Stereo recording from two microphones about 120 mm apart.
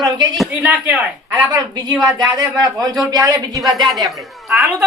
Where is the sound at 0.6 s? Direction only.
15° right (ahead or behind).